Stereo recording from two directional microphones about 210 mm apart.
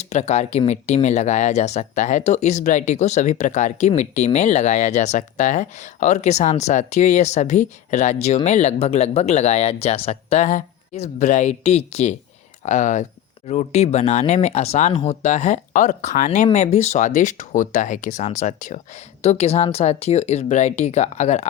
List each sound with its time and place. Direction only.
0.0 s speech: 30° left (ahead or behind)